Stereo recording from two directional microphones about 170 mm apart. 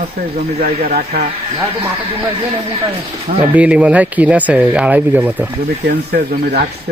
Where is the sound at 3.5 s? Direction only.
10° right (ahead or behind).